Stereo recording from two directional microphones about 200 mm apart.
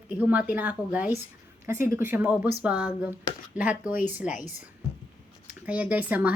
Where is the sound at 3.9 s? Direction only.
40° left (ahead or behind).